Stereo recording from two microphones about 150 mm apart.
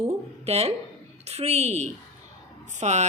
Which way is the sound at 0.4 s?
45° right (ahead or behind).